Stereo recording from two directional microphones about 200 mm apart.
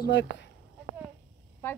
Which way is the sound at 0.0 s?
60° left (ahead or behind).